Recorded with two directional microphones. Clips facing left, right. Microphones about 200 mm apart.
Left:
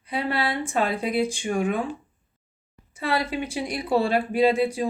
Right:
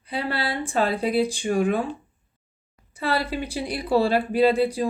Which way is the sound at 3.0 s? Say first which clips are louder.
Even; 35° right (ahead or behind).